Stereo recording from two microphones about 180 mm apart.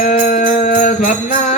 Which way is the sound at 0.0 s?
45° left (ahead or behind).